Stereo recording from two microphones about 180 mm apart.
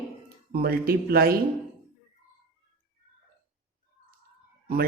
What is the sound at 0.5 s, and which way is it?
Speech, 60° right (ahead or behind).